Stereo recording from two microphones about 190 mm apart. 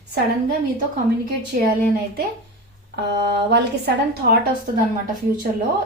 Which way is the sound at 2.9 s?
60° right (ahead or behind).